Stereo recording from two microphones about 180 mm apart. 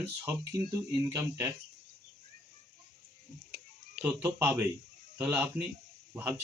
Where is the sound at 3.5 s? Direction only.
10° right (ahead or behind).